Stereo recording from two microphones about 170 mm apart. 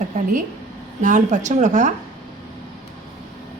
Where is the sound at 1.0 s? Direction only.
45° right (ahead or behind).